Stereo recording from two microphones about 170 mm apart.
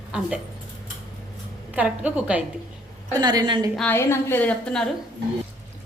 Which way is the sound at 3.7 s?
10° left (ahead or behind).